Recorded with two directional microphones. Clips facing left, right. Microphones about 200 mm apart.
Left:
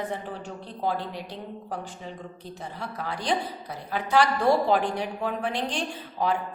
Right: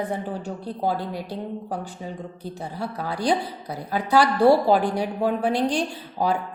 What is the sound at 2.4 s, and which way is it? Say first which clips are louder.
A woman's voice: right 7 dB; 35° right (ahead or behind).